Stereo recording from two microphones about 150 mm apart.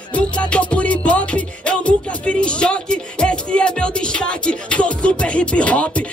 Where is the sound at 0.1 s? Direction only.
10° left (ahead or behind).